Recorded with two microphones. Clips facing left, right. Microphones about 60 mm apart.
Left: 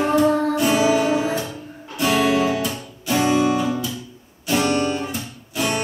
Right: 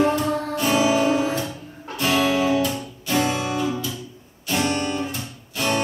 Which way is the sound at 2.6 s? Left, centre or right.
Centre.